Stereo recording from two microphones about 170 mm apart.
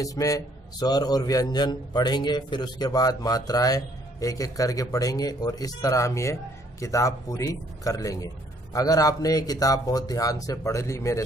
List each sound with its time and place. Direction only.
0.0 s a man's voice: 20° left (ahead or behind)